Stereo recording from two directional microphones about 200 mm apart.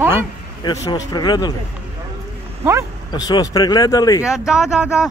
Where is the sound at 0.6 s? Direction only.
20° left (ahead or behind).